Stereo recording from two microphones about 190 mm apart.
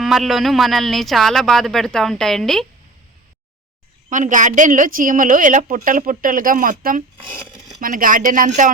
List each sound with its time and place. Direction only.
0.0 s speech: centre (ahead or behind)
4.1 s a woman's voice: 40° right (ahead or behind)